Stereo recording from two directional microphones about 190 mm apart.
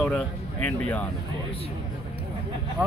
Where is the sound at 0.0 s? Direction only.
5° left (ahead or behind).